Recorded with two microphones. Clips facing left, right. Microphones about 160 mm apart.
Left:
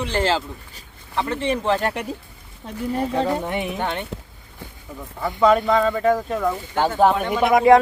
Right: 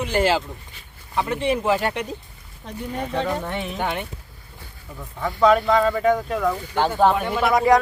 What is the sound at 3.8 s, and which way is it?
Speech, 5° right (ahead or behind).